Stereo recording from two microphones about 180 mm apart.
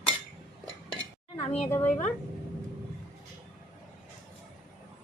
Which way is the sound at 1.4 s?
35° left (ahead or behind).